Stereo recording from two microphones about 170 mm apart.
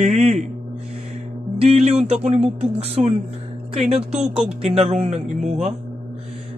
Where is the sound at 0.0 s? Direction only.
40° right (ahead or behind).